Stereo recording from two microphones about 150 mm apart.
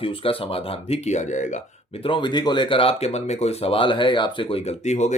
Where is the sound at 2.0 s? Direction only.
35° left (ahead or behind); by 5.2 s 50° left (ahead or behind).